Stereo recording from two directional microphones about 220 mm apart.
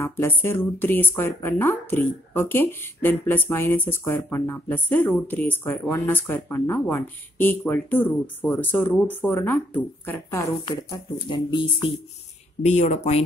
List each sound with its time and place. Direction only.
0.0 s speech: 10° left (ahead or behind); by 13.2 s 30° left (ahead or behind)